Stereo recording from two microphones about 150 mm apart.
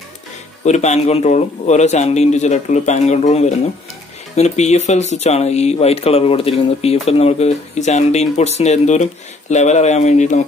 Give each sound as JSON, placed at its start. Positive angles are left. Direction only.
{"t": 0.7, "sound": "speech", "side_deg": 50}